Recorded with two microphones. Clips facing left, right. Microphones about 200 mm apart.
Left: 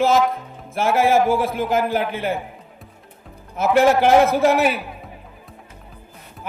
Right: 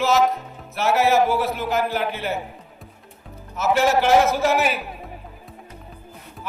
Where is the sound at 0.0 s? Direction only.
55° left (ahead or behind).